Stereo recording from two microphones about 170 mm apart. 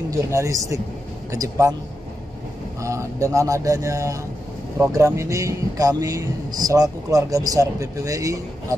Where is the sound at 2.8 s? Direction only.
15° right (ahead or behind).